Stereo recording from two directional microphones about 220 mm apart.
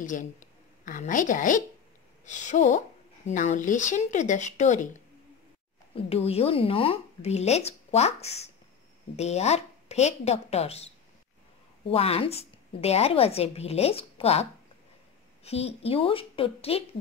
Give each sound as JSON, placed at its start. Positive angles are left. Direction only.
{"t": 0.0, "sound": "a woman's voice", "side_deg": 35}
{"t": 11.9, "sound": "a woman's voice", "side_deg": 25}